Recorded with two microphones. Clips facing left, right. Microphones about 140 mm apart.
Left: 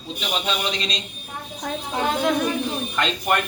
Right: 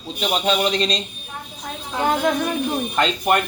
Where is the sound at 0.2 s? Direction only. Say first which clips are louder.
Right 6 dB; 40° right (ahead or behind).